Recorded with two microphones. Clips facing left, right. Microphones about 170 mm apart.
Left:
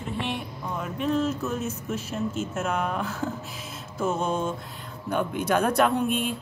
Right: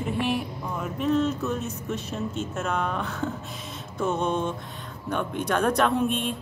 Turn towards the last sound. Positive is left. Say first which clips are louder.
# even
turn(degrees=5)  # may be behind; listen again after turning